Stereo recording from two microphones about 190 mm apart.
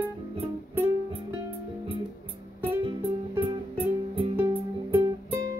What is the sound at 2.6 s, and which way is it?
Music, 30° right (ahead or behind).